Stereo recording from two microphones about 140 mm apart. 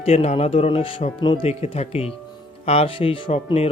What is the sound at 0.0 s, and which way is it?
Speech, 50° left (ahead or behind).